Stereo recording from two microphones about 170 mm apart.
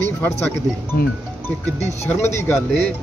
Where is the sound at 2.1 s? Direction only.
10° left (ahead or behind).